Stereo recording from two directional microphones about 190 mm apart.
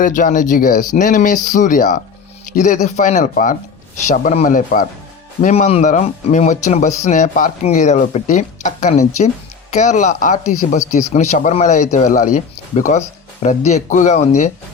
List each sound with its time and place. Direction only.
0.0 s a man's voice: 45° left (ahead or behind)